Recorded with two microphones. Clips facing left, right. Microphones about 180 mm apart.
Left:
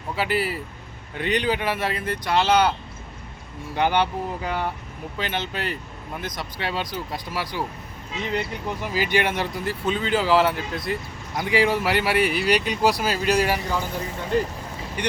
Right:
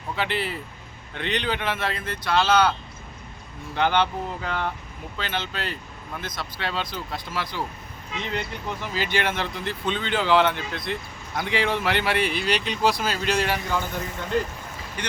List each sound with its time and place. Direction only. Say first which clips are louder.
0.2 s speech: left 3 dB; 5° left (ahead or behind)
3.8 s speech: left 1 dB; 10° left (ahead or behind)